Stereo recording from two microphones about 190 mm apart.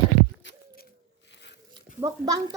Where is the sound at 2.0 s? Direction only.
20° right (ahead or behind).